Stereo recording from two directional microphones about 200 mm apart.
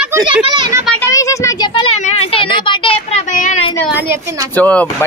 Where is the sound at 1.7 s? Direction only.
30° left (ahead or behind).